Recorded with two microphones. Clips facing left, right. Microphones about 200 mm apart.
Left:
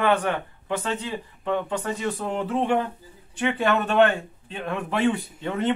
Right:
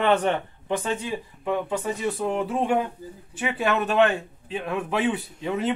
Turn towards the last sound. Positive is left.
turn(degrees=-5)  # may be behind; listen again after turning